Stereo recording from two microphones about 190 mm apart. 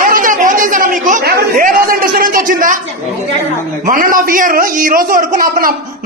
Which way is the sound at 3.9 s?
45° right (ahead or behind).